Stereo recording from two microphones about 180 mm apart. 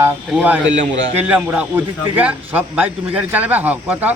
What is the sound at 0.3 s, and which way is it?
A man's voice, 5° right (ahead or behind).